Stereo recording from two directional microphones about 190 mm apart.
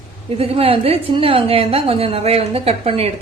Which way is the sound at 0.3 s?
30° right (ahead or behind).